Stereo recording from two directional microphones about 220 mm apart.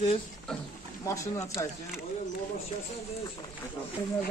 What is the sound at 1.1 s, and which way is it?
Speech, 15° left (ahead or behind).